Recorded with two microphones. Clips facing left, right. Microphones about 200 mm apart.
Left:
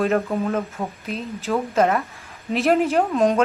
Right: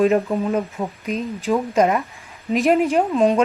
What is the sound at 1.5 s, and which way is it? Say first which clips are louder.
Speech: right 2 dB; 15° right (ahead or behind).